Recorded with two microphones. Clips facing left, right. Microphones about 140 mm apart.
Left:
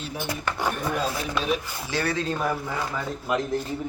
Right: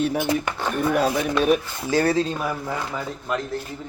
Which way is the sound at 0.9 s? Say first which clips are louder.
Right 7 dB; 65° right (ahead or behind).